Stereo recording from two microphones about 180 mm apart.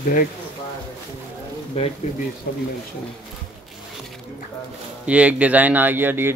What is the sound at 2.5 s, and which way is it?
Speech, 55° left (ahead or behind).